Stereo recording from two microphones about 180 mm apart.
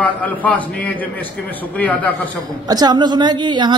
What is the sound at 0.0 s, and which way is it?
Speech, 10° left (ahead or behind).